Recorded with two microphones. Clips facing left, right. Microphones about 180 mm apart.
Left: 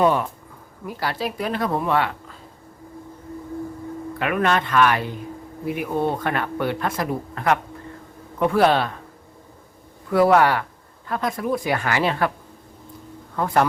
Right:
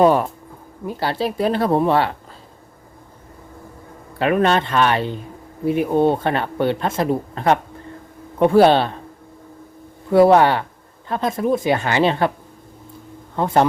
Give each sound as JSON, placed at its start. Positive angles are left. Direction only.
{"t": 0.0, "sound": "speech", "side_deg": -40}
{"t": 0.9, "sound": "speech", "side_deg": -30}
{"t": 4.2, "sound": "speech", "side_deg": -30}
{"t": 10.1, "sound": "speech", "side_deg": -25}
{"t": 13.3, "sound": "speech", "side_deg": -25}